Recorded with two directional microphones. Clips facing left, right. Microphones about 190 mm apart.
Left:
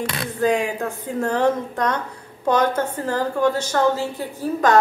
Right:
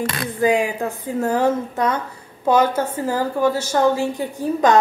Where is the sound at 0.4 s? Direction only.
10° right (ahead or behind).